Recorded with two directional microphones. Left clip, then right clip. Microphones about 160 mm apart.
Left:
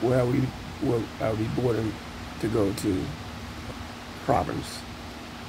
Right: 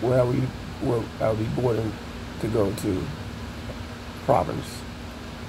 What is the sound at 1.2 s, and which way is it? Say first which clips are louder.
Speech: right 5 dB; 20° left (ahead or behind).